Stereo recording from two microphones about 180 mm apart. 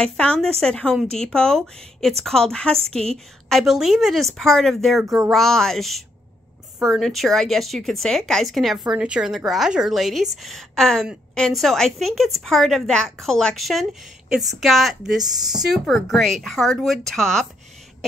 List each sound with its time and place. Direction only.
0.0 s a woman's voice: 5° left (ahead or behind)
5.0 s speech: 15° right (ahead or behind)
5.3 s a woman's voice: centre (ahead or behind)